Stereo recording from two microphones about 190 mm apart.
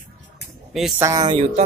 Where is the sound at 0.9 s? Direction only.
20° right (ahead or behind).